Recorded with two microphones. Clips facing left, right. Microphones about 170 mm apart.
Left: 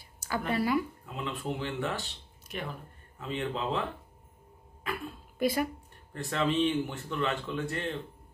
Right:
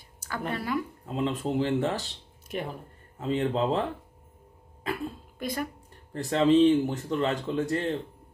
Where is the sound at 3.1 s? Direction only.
35° right (ahead or behind).